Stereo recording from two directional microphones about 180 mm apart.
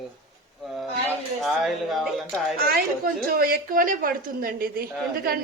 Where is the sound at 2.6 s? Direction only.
60° right (ahead or behind).